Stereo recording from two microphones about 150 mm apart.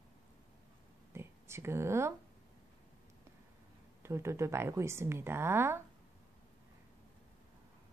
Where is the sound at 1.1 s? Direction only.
15° right (ahead or behind).